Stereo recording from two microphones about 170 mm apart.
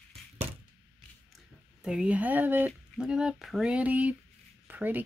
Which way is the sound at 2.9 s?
5° right (ahead or behind).